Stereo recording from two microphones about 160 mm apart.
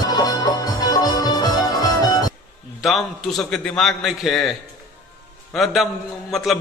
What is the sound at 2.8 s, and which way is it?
A man's voice, centre (ahead or behind).